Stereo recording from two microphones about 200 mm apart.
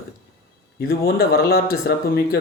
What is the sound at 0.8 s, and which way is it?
Speech, 50° left (ahead or behind).